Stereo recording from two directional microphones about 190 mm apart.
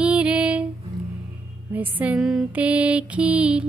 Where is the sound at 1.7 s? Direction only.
10° right (ahead or behind).